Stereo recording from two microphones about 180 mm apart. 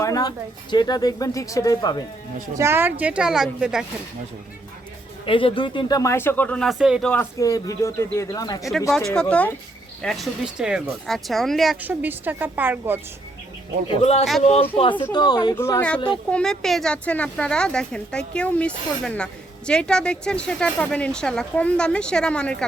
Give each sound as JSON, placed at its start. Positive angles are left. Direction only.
{"t": 0.0, "sound": "speech", "side_deg": 20}
{"t": 2.6, "sound": "a woman's voice", "side_deg": -15}
{"t": 5.2, "sound": "speech", "side_deg": 30}
{"t": 7.1, "sound": "speech", "side_deg": 15}
{"t": 8.9, "sound": "a woman's voice", "side_deg": 5}
{"t": 14.0, "sound": "a woman's voice", "side_deg": 35}